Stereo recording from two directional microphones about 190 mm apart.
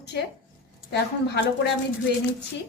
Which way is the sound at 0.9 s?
60° left (ahead or behind).